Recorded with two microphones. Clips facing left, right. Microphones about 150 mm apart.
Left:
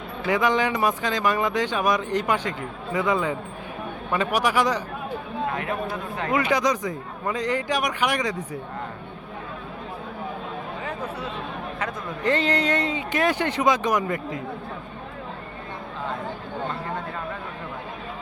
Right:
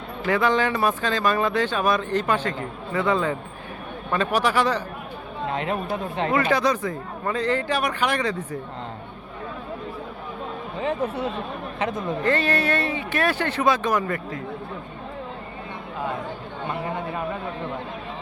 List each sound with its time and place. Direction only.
0.3 s speech: 15° left (ahead or behind)
5.5 s speech: 25° right (ahead or behind)
6.3 s speech: 15° left (ahead or behind)
11.8 s speech: 20° right (ahead or behind)
12.2 s speech: 20° left (ahead or behind)
16.6 s a sound: 15° right (ahead or behind)